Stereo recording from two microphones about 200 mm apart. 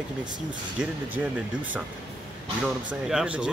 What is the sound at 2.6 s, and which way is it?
Speech, 5° right (ahead or behind).